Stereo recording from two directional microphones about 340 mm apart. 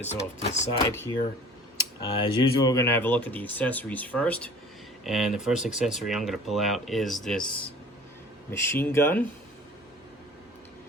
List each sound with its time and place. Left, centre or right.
0.0 s speech: centre
0.9 s speech: centre